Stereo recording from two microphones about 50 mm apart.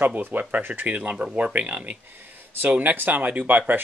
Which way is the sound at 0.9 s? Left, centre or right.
Right.